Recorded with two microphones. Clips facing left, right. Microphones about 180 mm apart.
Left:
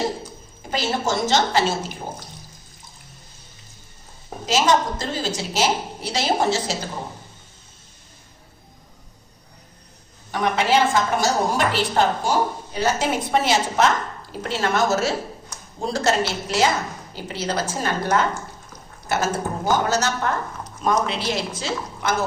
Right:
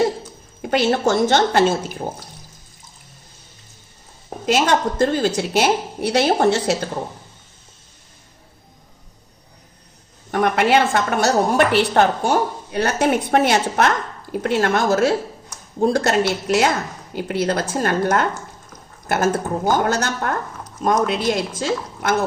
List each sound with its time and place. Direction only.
0.6 s a woman's voice: 60° right (ahead or behind)
4.4 s a woman's voice: 55° right (ahead or behind)
10.3 s a woman's voice: 55° right (ahead or behind)